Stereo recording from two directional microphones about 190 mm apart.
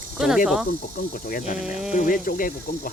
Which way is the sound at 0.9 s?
45° left (ahead or behind).